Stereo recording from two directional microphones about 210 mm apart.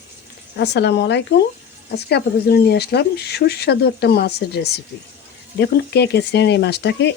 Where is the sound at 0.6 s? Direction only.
55° left (ahead or behind).